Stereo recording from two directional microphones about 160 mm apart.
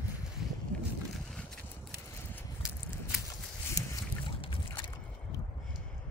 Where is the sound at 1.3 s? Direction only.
5° left (ahead or behind).